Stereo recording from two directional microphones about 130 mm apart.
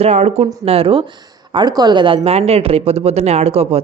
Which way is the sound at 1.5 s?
35° right (ahead or behind).